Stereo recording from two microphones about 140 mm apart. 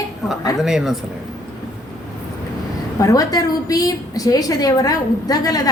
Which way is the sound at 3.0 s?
25° left (ahead or behind).